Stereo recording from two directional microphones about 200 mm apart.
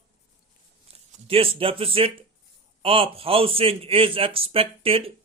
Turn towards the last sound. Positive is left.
turn(degrees=-30)  # may be behind; listen again after turning